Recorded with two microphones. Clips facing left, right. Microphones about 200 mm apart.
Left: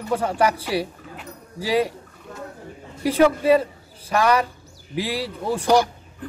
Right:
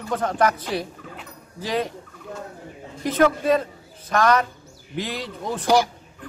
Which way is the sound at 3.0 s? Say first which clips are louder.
Left 2 dB; 10° left (ahead or behind).